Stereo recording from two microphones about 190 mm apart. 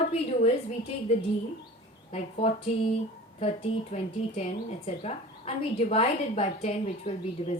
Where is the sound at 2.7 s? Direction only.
35° left (ahead or behind).